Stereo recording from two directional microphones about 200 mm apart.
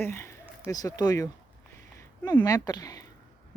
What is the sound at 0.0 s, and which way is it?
Speech, 10° left (ahead or behind).